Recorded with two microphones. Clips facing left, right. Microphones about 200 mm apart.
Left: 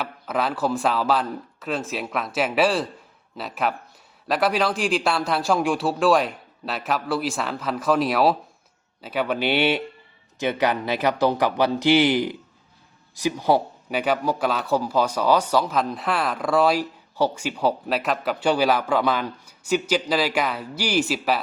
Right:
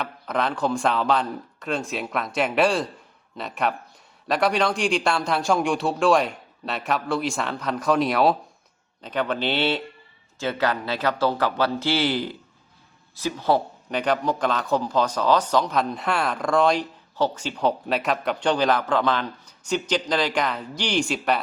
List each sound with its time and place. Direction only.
0.0 s speech: 5° left (ahead or behind)